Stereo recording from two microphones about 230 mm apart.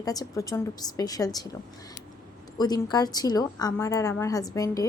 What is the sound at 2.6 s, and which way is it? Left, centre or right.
A woman's voice, centre.